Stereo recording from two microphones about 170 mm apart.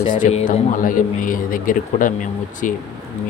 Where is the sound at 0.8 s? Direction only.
55° left (ahead or behind).